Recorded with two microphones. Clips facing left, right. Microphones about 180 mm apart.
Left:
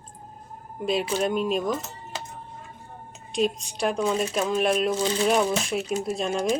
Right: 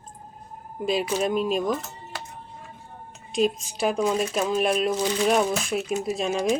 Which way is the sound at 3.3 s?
Centre (ahead or behind).